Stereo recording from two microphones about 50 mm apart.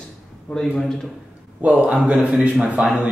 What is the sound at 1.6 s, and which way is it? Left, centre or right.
A man's voice, right.